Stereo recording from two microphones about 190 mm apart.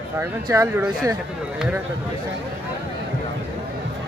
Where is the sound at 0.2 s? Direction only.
15° right (ahead or behind).